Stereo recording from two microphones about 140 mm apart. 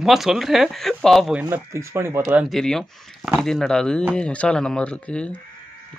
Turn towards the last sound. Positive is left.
turn(degrees=10)  # may be behind; listen again after turning